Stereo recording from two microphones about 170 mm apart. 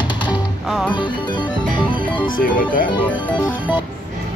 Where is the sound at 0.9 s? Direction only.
25° left (ahead or behind).